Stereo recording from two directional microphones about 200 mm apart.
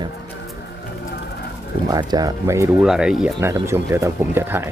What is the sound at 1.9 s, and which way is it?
Speech, 20° right (ahead or behind).